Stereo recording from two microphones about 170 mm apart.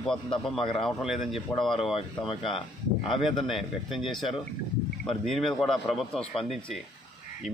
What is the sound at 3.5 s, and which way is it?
Speech, centre (ahead or behind).